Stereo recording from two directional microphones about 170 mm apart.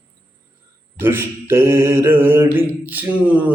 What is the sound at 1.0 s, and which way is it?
Mantra, 15° right (ahead or behind).